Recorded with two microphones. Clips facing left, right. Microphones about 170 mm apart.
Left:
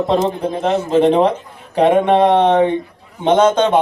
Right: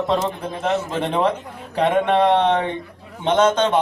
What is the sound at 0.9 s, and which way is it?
A man's voice, 20° left (ahead or behind).